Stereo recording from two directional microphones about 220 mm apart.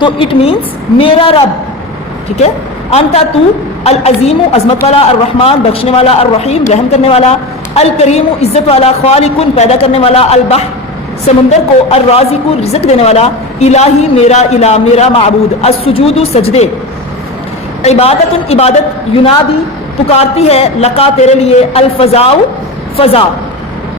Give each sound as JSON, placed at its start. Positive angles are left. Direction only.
{"t": 0.0, "sound": "a woman's voice", "side_deg": 25}
{"t": 2.9, "sound": "a woman's voice", "side_deg": 30}
{"t": 11.9, "sound": "a woman's voice", "side_deg": 30}
{"t": 17.8, "sound": "a woman's voice", "side_deg": 30}